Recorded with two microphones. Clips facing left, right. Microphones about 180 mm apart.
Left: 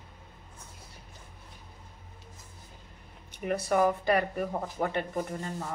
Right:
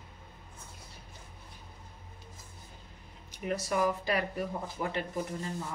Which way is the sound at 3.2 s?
55° left (ahead or behind).